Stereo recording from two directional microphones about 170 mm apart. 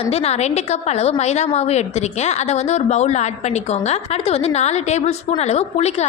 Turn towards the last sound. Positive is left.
turn(degrees=40)  # may be behind; listen again after turning